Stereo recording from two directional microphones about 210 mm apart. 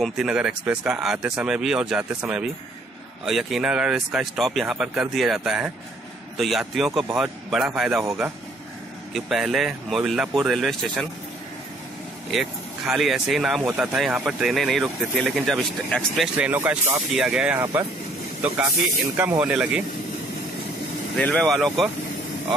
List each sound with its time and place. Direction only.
0.0 s speech: 5° right (ahead or behind)
12.3 s speech: centre (ahead or behind)
21.2 s speech: 5° left (ahead or behind)